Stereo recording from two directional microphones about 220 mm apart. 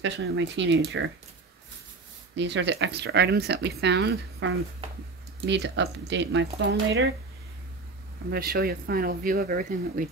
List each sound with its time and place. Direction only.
0.0 s speech: 55° right (ahead or behind)
2.3 s speech: 55° right (ahead or behind)
8.3 s speech: 45° right (ahead or behind)